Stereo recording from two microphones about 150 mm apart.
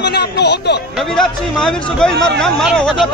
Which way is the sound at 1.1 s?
5° left (ahead or behind).